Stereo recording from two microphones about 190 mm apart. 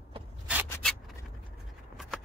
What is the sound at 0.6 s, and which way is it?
Zipper, 10° left (ahead or behind).